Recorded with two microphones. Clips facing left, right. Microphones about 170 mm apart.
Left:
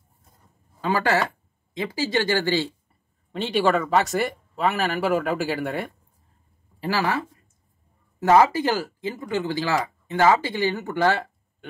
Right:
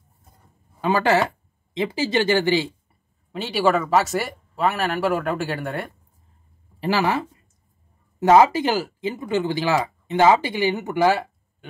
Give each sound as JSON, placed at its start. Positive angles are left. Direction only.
{"t": 0.7, "sound": "speech", "side_deg": -20}
{"t": 3.3, "sound": "speech", "side_deg": -5}
{"t": 6.8, "sound": "speech", "side_deg": -20}
{"t": 8.3, "sound": "speech", "side_deg": -20}